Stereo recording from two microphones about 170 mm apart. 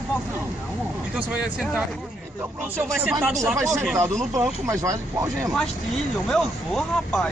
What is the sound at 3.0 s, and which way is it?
Speech, 5° right (ahead or behind).